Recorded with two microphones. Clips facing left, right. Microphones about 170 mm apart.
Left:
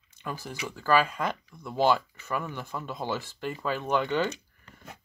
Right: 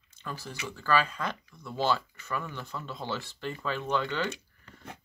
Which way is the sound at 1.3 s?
55° left (ahead or behind).